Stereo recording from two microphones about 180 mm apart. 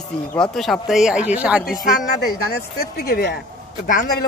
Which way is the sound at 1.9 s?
60° left (ahead or behind).